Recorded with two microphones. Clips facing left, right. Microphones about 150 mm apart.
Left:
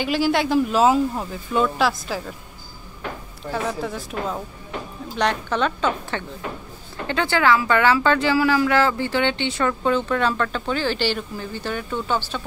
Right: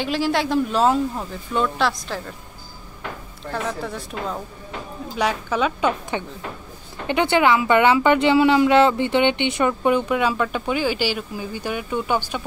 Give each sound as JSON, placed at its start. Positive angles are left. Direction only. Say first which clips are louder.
{"t": 0.0, "sound": "speech", "louder": "left 1 dB", "side_deg": 0}
{"t": 3.4, "sound": "a woman's voice", "louder": "left 1 dB", "side_deg": 0}